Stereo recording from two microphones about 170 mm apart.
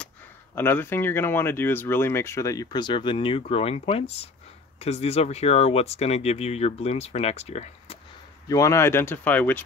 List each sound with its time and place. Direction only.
0.6 s speech: 15° left (ahead or behind); by 8.0 s 40° left (ahead or behind)
8.5 s speech: 20° left (ahead or behind)